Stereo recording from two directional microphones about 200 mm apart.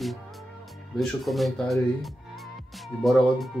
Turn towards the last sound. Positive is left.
turn(degrees=0)  # may be behind; listen again after turning